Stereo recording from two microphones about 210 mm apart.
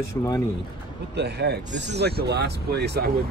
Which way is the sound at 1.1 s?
50° right (ahead or behind).